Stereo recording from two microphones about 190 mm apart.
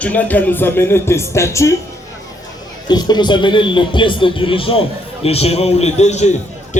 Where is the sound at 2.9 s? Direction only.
20° left (ahead or behind).